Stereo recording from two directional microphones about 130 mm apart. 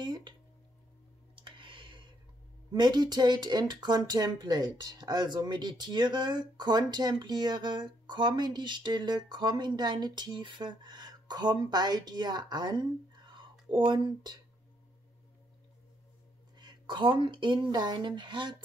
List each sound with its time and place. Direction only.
0.0 s music: 35° right (ahead or behind)
1.3 s clicking: 40° right (ahead or behind)
2.7 s speech: 35° right (ahead or behind)
16.5 s speech: 35° right (ahead or behind)